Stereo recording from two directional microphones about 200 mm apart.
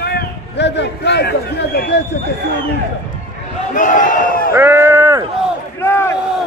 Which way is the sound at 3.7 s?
40° left (ahead or behind).